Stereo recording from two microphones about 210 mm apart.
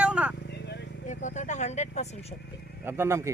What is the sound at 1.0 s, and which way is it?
Speech, 35° left (ahead or behind).